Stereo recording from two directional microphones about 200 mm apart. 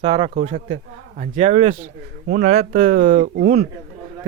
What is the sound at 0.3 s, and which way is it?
Speech, 35° right (ahead or behind).